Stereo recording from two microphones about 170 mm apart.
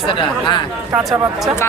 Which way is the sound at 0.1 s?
30° left (ahead or behind).